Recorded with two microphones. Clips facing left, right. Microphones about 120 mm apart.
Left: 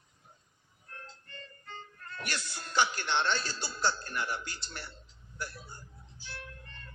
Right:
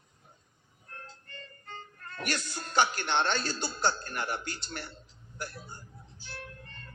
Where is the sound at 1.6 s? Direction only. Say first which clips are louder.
Right 2 dB; 50° right (ahead or behind).